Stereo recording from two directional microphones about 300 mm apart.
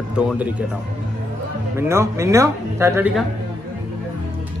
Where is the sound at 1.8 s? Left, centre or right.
Centre.